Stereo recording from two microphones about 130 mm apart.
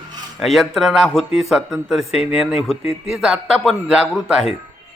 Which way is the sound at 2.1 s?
55° left (ahead or behind).